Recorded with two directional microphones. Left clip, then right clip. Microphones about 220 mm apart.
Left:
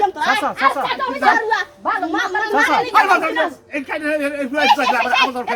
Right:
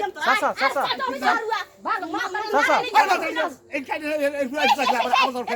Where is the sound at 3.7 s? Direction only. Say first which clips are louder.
Left 5 dB; 55° right (ahead or behind).